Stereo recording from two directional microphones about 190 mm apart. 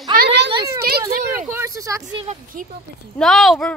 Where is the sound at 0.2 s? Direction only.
65° right (ahead or behind).